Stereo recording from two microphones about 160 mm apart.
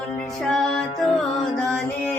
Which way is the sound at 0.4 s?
5° left (ahead or behind).